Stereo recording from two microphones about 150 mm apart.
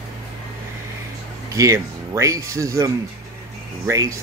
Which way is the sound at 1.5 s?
20° right (ahead or behind).